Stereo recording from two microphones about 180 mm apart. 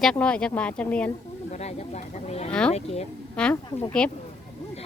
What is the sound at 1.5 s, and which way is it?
Speech, 40° left (ahead or behind).